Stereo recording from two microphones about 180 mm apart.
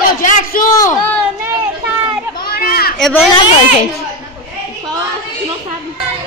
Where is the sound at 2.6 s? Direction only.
55° left (ahead or behind).